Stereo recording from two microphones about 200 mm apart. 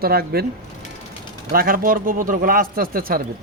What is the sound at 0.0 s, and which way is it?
Speech, 50° right (ahead or behind).